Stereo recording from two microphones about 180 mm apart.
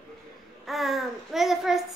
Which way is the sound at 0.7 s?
Centre (ahead or behind).